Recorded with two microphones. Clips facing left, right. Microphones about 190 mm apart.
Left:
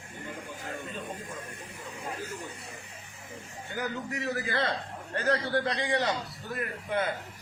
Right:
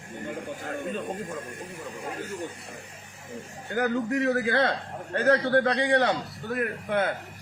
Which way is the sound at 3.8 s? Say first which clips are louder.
Right 9 dB; 60° right (ahead or behind).